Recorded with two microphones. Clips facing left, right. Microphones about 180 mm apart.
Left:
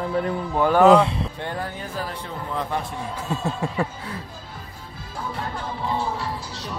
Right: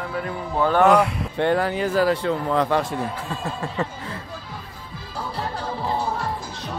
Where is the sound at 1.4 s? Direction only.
80° right.